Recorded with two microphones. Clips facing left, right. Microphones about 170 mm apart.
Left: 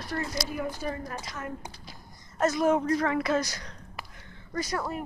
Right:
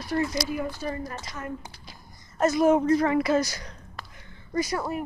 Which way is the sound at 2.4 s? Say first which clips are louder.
Right 4 dB; 10° right (ahead or behind).